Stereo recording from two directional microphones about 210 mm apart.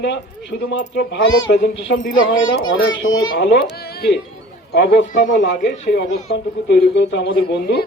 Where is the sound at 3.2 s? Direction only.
55° left (ahead or behind).